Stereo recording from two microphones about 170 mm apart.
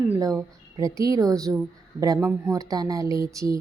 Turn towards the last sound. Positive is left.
turn(degrees=-20)  # may be behind; listen again after turning